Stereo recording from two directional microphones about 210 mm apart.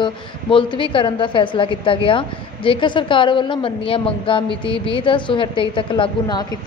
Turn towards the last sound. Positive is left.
turn(degrees=25)  # may be behind; listen again after turning